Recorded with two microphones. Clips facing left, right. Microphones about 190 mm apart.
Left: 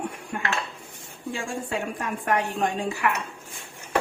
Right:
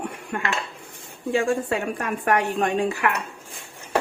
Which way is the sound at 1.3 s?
65° right (ahead or behind).